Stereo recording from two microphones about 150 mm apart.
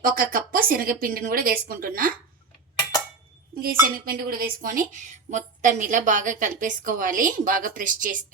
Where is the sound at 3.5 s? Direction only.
80° right.